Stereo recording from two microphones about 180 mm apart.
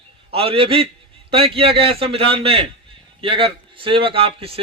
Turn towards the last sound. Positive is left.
turn(degrees=-30)  # may be behind; listen again after turning